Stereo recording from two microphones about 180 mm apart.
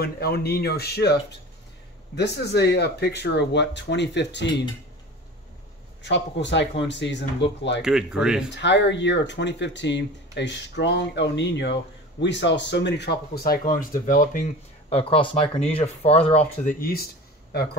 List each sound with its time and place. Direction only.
0.0 s speech: 60° left (ahead or behind)
2.1 s speech: 70° left (ahead or behind)
6.0 s speech: 80° left
7.8 s speech: 5° right (ahead or behind)
8.5 s speech: 75° left (ahead or behind); by 14.4 s 50° left (ahead or behind)
14.9 s speech: 30° left (ahead or behind)